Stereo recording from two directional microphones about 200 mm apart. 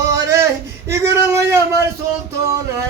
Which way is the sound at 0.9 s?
15° right (ahead or behind).